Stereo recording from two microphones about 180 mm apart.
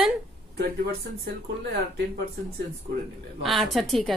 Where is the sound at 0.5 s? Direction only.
65° right (ahead or behind).